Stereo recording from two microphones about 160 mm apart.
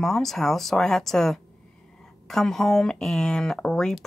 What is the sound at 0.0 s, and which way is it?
Speech, centre (ahead or behind).